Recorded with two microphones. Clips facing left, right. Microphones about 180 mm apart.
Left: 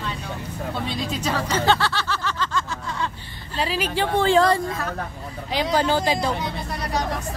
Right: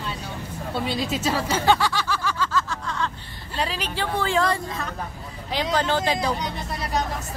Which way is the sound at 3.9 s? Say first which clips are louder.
Left 5 dB; 30° left (ahead or behind).